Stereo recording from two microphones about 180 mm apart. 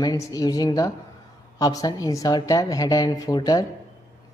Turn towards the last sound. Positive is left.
turn(degrees=20)  # may be behind; listen again after turning